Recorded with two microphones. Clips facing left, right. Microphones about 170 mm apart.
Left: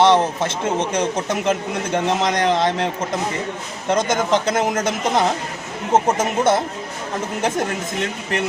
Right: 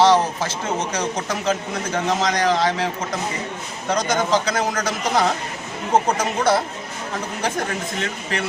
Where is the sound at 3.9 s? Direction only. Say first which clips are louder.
Left 2 dB; 25° left (ahead or behind).